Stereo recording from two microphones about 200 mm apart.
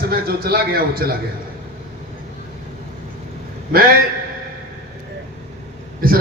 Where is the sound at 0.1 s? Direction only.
50° right (ahead or behind).